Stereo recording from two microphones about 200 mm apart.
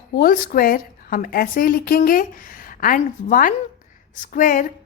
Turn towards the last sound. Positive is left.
turn(degrees=45)  # may be behind; listen again after turning